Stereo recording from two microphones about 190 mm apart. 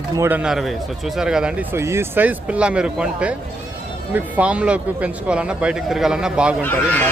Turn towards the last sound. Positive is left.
turn(degrees=10)  # may be behind; listen again after turning